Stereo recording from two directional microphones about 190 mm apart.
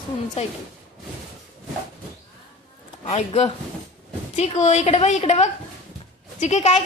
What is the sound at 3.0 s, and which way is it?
A woman's voice, 35° left (ahead or behind).